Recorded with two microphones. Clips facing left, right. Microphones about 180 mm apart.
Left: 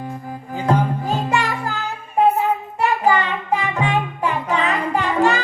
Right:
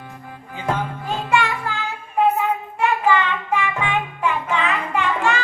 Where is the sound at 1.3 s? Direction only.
40° left (ahead or behind).